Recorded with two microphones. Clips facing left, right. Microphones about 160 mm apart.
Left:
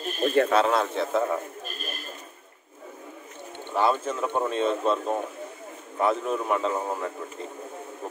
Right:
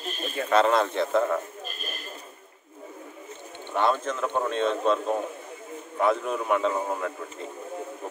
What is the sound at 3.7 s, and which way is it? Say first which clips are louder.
Speech: left 1 dB; 5° left (ahead or behind).